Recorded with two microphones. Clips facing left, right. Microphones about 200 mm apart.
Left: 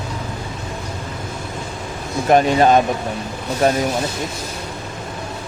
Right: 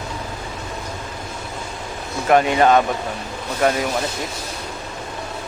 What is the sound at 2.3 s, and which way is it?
Speech, 30° left (ahead or behind).